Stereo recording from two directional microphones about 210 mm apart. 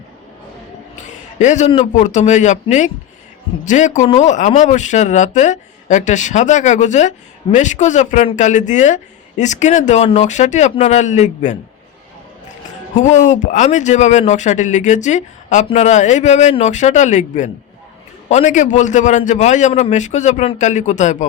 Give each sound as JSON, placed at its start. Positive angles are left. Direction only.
{"t": 1.4, "sound": "speech", "side_deg": 35}
{"t": 13.0, "sound": "speech", "side_deg": 35}